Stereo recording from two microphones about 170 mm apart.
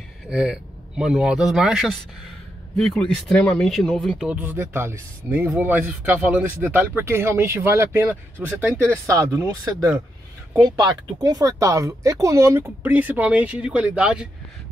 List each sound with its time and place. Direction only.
0.3 s speech: 5° right (ahead or behind)
3.3 s speech: 5° left (ahead or behind)